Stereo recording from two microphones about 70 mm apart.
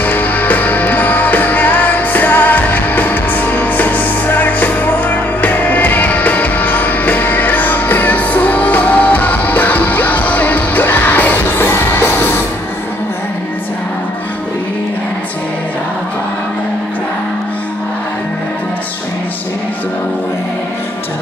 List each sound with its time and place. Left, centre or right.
0.0 s music: left